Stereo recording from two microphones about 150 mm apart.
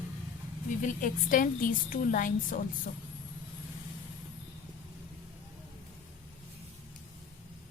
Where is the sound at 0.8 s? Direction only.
60° left (ahead or behind).